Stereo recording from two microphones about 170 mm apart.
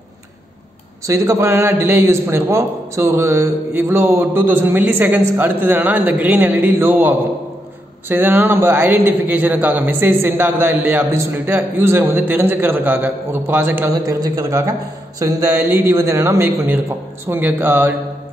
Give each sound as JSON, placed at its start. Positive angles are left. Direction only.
{"t": 1.0, "sound": "a man's voice", "side_deg": -15}